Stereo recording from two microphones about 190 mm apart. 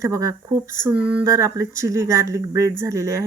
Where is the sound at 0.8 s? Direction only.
5° right (ahead or behind).